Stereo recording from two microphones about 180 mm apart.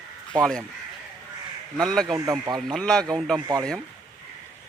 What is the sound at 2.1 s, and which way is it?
Speech, 20° right (ahead or behind).